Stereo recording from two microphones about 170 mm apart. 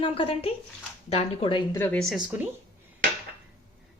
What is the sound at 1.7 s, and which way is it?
Speech, 15° left (ahead or behind).